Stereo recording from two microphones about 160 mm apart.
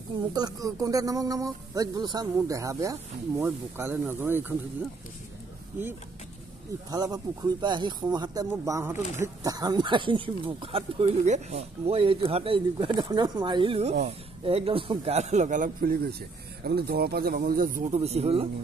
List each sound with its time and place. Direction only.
0.3 s speech: 25° right (ahead or behind)
6.9 s speech: 25° right (ahead or behind); by 17.8 s 60° right (ahead or behind)
17.8 s speech: 40° right (ahead or behind)